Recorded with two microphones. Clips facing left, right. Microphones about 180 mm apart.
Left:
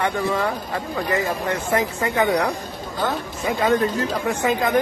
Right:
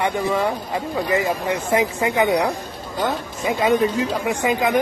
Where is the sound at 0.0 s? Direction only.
15° right (ahead or behind).